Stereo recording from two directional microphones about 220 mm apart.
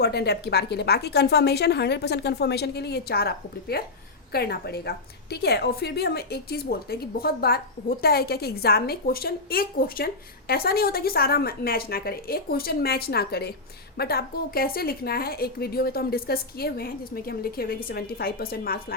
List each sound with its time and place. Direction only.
0.0 s a woman's voice: 50° left (ahead or behind)